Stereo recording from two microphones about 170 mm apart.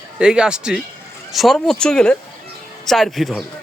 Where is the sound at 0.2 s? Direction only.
5° right (ahead or behind).